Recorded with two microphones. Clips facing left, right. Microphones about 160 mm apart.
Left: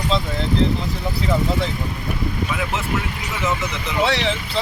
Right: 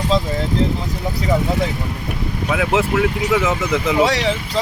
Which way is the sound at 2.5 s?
90° right.